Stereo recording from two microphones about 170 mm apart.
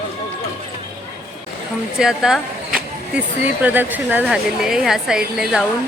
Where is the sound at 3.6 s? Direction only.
10° right (ahead or behind).